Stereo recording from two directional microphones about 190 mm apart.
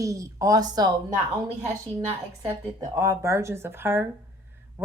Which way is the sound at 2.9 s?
15° right (ahead or behind).